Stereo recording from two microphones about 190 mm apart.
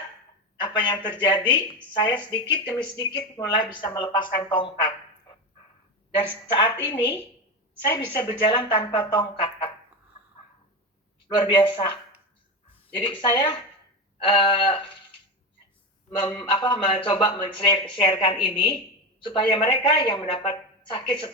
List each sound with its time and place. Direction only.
0.6 s a sound: 25° left (ahead or behind)
1.2 s speech: 25° left (ahead or behind)
6.7 s speech: 25° left (ahead or behind)
11.3 s speech: 25° left (ahead or behind)
13.0 s speech: 25° left (ahead or behind)
16.1 s speech: 25° left (ahead or behind)